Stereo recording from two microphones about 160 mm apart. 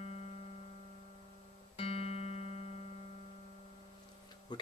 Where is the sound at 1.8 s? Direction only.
35° left (ahead or behind).